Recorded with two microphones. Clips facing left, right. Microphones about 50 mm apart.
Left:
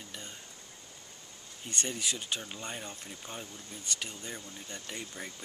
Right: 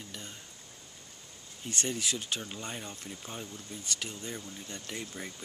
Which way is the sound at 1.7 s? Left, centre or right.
Centre.